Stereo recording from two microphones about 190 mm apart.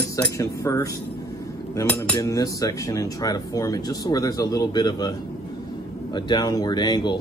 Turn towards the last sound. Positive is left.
turn(degrees=20)  # may be behind; listen again after turning